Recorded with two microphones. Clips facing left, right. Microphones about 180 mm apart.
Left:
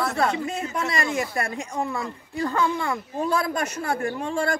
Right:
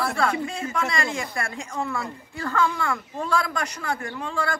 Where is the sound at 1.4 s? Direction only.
20° left (ahead or behind).